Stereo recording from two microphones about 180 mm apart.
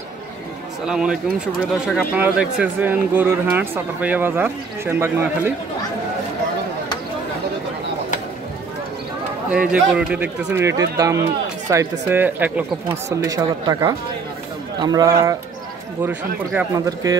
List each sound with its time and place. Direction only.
0.8 s speech: 5° right (ahead or behind)
9.5 s speech: 5° right (ahead or behind)
16.7 s speech: 20° right (ahead or behind)